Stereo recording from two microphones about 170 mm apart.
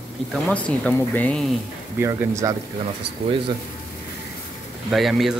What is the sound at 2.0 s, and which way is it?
Speech, 15° right (ahead or behind).